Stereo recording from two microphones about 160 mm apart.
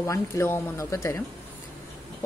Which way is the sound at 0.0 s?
20° left (ahead or behind).